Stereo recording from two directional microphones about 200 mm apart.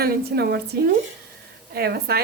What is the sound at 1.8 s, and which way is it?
Speech, 50° right (ahead or behind).